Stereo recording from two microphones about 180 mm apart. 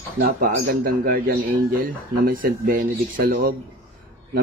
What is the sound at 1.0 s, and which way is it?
A man's voice, 50° right (ahead or behind).